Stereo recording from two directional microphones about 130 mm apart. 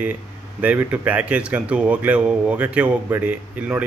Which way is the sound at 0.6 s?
10° right (ahead or behind).